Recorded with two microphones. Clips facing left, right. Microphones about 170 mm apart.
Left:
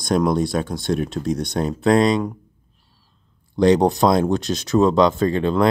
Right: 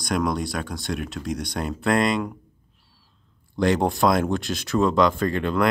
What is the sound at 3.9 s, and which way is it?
Speech, 20° left (ahead or behind).